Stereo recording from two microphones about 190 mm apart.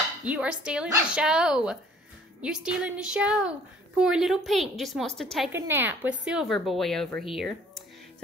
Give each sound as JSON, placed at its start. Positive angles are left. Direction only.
{"t": 0.2, "sound": "a woman's voice", "side_deg": -5}
{"t": 5.5, "sound": "a woman's voice", "side_deg": -10}